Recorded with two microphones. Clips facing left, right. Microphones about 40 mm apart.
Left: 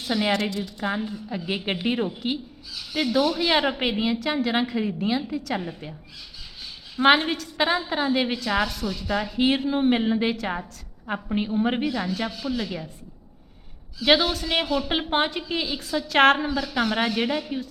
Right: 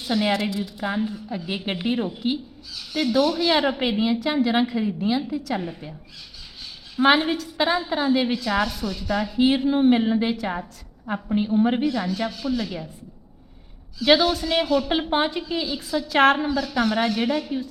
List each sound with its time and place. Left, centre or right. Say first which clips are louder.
0.0 s a woman's voice: right 1 dB; centre
6.9 s a woman's voice: even; centre
7.2 s a woman's voice: right 2 dB; centre
9.9 s a woman's voice: right 2 dB; centre
11.1 s a woman's voice: right 3 dB; centre
14.0 s a woman's voice: right 2 dB; centre
15.4 s a woman's voice: right 1 dB; centre
15.8 s a woman's voice: even; centre